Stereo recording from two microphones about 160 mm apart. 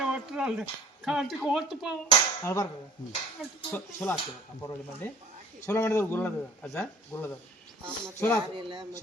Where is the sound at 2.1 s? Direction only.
20° left (ahead or behind).